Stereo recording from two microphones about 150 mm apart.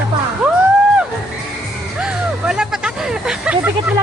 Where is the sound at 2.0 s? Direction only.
5° right (ahead or behind).